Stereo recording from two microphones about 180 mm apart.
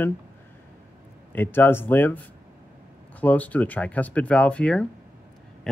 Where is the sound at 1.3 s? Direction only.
10° left (ahead or behind).